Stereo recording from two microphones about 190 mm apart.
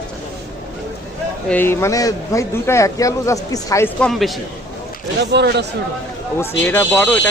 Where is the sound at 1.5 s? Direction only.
10° left (ahead or behind).